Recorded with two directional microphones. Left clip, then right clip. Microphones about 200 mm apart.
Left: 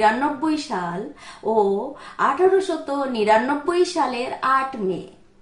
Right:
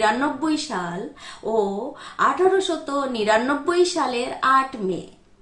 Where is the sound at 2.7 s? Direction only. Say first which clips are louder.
Even; 10° right (ahead or behind).